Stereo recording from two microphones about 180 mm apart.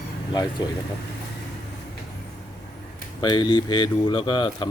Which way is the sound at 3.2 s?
25° left (ahead or behind).